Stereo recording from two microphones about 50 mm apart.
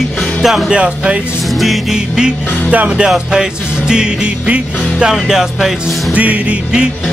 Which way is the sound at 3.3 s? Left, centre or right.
Centre.